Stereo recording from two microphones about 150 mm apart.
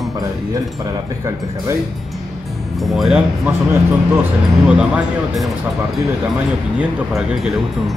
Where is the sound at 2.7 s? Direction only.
Centre (ahead or behind).